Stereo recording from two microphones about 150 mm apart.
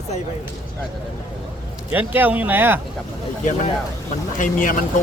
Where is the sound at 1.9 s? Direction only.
10° right (ahead or behind).